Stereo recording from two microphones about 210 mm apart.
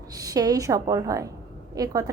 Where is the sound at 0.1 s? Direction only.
15° right (ahead or behind).